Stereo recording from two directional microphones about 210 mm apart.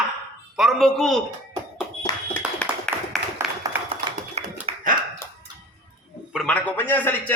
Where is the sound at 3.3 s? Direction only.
15° right (ahead or behind).